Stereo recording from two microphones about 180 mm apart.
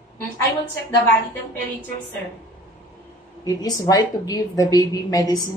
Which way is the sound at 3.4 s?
20° left (ahead or behind).